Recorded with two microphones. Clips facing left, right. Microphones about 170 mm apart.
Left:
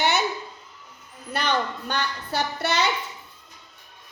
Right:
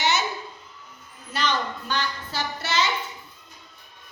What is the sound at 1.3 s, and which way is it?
A child's voice, 55° left (ahead or behind).